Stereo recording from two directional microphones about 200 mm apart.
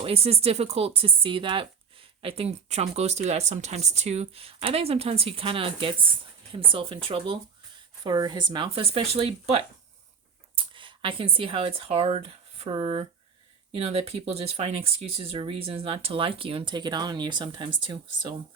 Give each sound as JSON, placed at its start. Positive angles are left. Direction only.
{"t": 0.0, "sound": "speech", "side_deg": -30}